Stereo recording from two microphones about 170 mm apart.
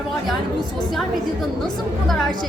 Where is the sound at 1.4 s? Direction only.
Centre (ahead or behind).